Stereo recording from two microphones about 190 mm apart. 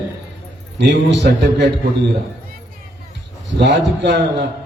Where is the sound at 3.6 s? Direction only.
65° right (ahead or behind).